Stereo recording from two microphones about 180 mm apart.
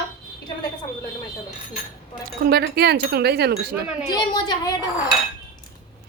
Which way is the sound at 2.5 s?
65° right (ahead or behind).